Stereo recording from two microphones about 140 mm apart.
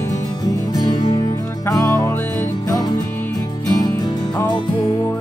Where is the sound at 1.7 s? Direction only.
25° left (ahead or behind).